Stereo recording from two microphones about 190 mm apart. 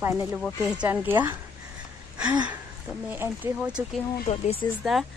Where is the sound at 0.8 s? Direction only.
10° right (ahead or behind).